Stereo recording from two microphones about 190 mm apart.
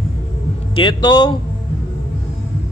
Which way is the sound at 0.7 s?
25° left (ahead or behind).